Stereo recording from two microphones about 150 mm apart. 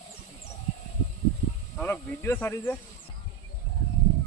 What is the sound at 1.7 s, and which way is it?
Speech, 15° left (ahead or behind).